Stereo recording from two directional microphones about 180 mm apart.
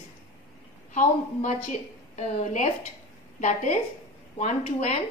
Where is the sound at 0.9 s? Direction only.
40° left (ahead or behind).